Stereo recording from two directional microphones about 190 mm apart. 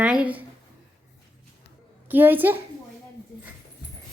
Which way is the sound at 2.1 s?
10° right (ahead or behind).